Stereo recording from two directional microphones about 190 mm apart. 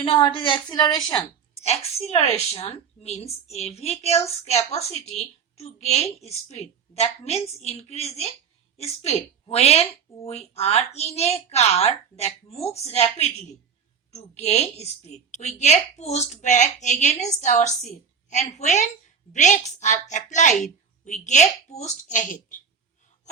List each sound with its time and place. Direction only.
0.0 s a woman's voice: 25° left (ahead or behind)
1.6 s a woman's voice: 35° left (ahead or behind)
5.5 s a woman's voice: 35° left (ahead or behind)